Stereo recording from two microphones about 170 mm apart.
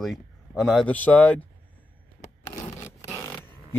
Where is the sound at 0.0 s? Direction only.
Centre (ahead or behind).